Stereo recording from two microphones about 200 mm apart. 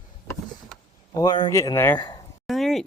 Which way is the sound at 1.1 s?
20° left (ahead or behind).